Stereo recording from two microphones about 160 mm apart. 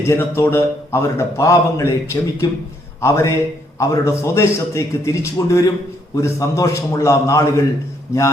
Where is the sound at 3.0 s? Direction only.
20° left (ahead or behind).